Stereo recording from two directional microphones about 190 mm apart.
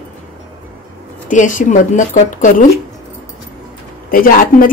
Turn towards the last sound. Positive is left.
turn(degrees=45)  # may be behind; listen again after turning